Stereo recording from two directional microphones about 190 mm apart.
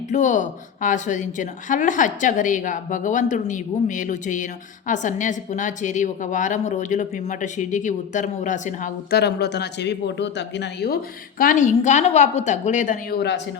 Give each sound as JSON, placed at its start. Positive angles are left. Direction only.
{"t": 0.1, "sound": "a woman's voice", "side_deg": 40}